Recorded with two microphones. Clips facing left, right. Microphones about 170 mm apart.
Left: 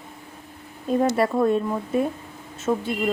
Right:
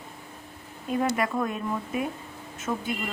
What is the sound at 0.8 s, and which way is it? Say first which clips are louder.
A woman's voice: left 6 dB; 35° left (ahead or behind).